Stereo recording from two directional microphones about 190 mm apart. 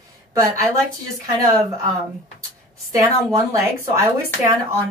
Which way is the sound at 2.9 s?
15° right (ahead or behind).